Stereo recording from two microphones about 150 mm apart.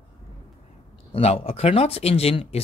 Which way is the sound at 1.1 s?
40° left (ahead or behind).